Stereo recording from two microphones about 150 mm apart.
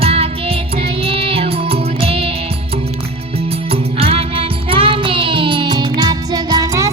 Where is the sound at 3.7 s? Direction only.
40° right (ahead or behind).